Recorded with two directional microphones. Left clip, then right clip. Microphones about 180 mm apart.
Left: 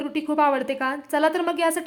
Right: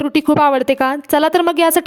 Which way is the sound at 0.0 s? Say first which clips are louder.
Right 8 dB; 55° right (ahead or behind).